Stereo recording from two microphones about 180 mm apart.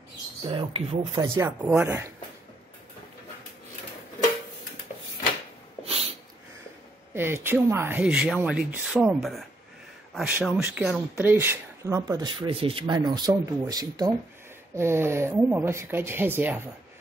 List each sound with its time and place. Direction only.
0.4 s speech: 30° right (ahead or behind)
1.2 s speech: 15° right (ahead or behind)
7.2 s speech: 15° right (ahead or behind)